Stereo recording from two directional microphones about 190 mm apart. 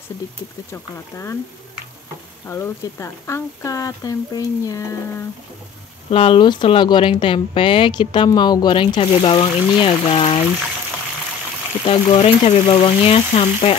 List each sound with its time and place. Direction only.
0.7 s speech: 15° left (ahead or behind)
2.4 s speech: 15° left (ahead or behind)
6.0 s speech: 30° left (ahead or behind)
11.8 s speech: 30° left (ahead or behind)